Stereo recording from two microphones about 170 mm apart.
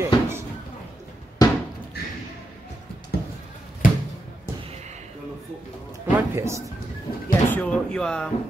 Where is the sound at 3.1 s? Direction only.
70° left (ahead or behind).